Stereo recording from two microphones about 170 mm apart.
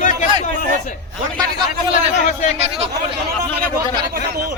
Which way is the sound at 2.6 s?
35° right (ahead or behind).